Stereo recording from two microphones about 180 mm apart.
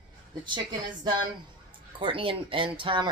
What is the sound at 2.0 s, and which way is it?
Speech, 30° right (ahead or behind).